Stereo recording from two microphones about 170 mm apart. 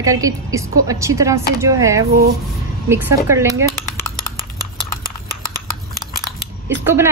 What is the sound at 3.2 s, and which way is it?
Speech, 15° right (ahead or behind).